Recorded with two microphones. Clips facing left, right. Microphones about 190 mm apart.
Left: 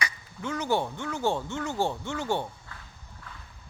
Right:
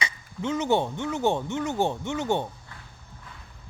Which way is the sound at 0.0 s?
20° right (ahead or behind).